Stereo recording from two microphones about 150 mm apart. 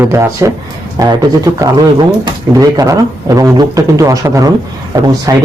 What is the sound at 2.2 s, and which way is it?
A man's voice, 25° right (ahead or behind).